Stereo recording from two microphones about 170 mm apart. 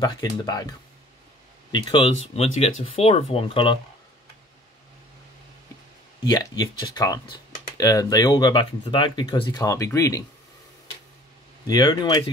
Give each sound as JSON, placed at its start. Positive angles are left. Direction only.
{"t": 0.0, "sound": "speech", "side_deg": 25}
{"t": 1.7, "sound": "speech", "side_deg": 30}
{"t": 6.2, "sound": "speech", "side_deg": 25}
{"t": 11.6, "sound": "speech", "side_deg": 25}